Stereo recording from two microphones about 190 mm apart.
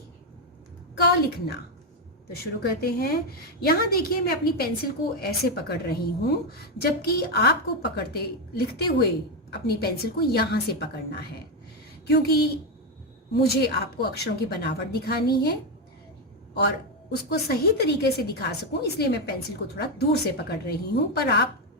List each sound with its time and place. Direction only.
2.4 s a woman's voice: 55° left (ahead or behind)
16.6 s a woman's voice: 60° left (ahead or behind)